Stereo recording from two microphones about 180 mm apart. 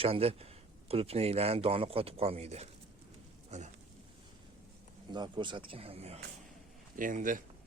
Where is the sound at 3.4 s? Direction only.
40° right (ahead or behind).